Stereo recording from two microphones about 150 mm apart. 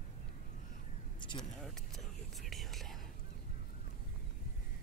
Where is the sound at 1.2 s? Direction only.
30° left (ahead or behind).